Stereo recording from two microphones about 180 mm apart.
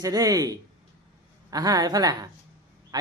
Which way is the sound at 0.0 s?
20° right (ahead or behind).